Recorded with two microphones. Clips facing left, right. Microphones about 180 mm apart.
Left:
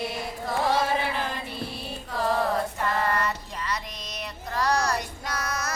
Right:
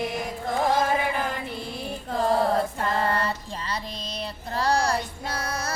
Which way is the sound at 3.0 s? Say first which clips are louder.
Right 1 dB; 30° right (ahead or behind).